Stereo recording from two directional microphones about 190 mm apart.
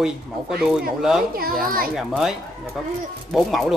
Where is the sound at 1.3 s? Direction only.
50° right (ahead or behind).